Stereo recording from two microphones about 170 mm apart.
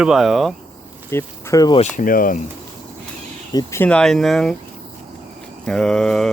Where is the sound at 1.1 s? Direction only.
15° left (ahead or behind).